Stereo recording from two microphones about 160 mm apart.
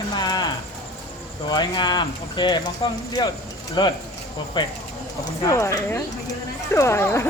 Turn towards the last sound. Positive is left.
turn(degrees=15)  # may be behind; listen again after turning